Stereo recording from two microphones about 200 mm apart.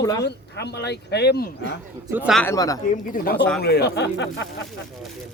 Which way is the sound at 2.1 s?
10° right (ahead or behind).